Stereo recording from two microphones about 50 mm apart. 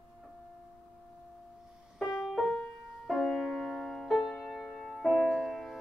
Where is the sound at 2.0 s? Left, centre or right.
Centre.